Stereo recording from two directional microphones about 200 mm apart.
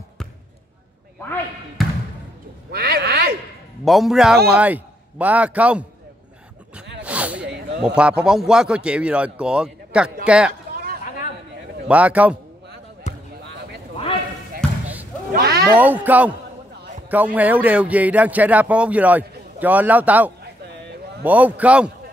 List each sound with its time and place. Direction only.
1.2 s speech: 10° left (ahead or behind)
2.7 s speech: 50° right (ahead or behind)
3.8 s a man's voice: centre (ahead or behind)
7.0 s snake: 5° right (ahead or behind)
7.8 s a man's voice: 5° right (ahead or behind)
11.9 s a man's voice: 5° right (ahead or behind)
13.0 s basketball bounce: 35° left (ahead or behind)
15.3 s a sound: 55° right (ahead or behind)
15.7 s a man's voice: 10° right (ahead or behind)